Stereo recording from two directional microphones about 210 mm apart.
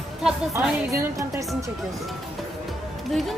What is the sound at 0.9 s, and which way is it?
Speech, 15° right (ahead or behind).